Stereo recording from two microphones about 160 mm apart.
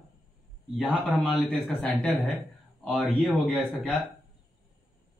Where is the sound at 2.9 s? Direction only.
5° right (ahead or behind).